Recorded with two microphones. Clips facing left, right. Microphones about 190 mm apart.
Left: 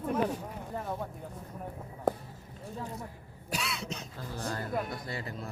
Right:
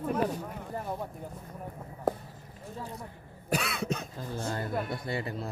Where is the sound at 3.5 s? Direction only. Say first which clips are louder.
Right 6 dB; 55° right (ahead or behind).